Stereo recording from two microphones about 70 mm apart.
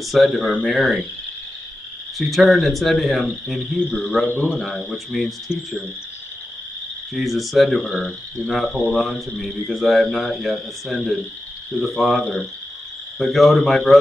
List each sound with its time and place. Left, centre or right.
0.0 s speech: centre
2.1 s speech: centre
7.2 s speech: centre